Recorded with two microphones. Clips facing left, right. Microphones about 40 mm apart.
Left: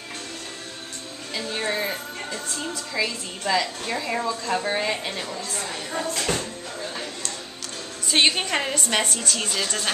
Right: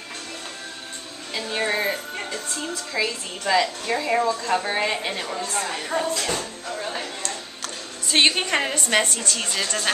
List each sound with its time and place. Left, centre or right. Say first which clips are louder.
1.3 s music: right 2 dB; centre
3.0 s a woman's voice: right 1 dB; centre
6.8 s a sound: right 3 dB; right
8.1 s a woman's voice: right 1 dB; centre